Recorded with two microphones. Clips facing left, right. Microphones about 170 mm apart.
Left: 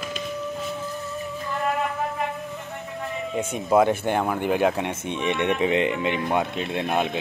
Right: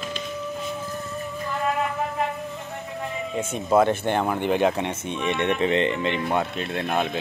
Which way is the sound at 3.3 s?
10° left (ahead or behind).